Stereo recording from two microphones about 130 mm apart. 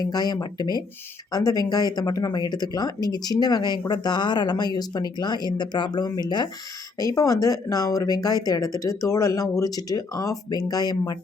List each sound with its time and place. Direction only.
0.0 s speech: 30° left (ahead or behind)